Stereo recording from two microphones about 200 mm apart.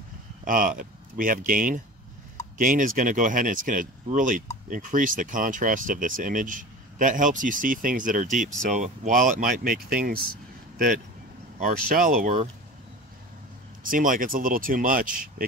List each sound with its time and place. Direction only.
0.5 s speech: 45° right (ahead or behind)
11.6 s speech: 45° right (ahead or behind)
13.8 s speech: 45° right (ahead or behind)